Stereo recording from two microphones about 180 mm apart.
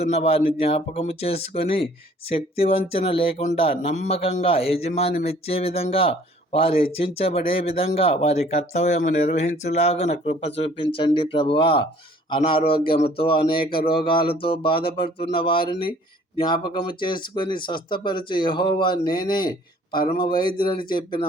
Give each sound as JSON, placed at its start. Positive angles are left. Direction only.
{"t": 0.0, "sound": "speech", "side_deg": 35}